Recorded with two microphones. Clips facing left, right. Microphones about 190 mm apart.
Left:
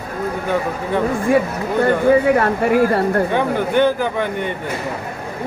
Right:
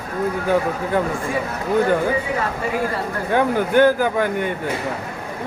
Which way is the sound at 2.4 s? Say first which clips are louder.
Left 7 dB; 65° left (ahead or behind).